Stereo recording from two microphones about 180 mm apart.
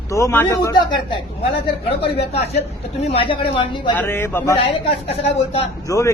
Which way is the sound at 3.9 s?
10° left (ahead or behind).